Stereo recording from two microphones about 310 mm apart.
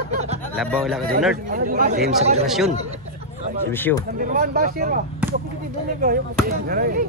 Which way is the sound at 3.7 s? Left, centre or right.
Centre.